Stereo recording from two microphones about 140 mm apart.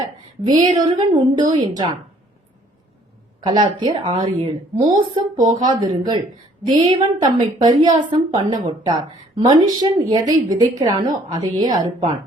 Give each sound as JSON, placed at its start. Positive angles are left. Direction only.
{"t": 0.0, "sound": "a woman's voice", "side_deg": -30}
{"t": 3.4, "sound": "a woman's voice", "side_deg": -30}